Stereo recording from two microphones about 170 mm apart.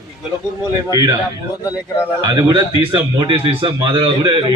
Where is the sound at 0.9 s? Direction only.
20° right (ahead or behind).